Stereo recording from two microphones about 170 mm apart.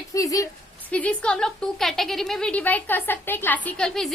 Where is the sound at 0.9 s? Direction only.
10° left (ahead or behind).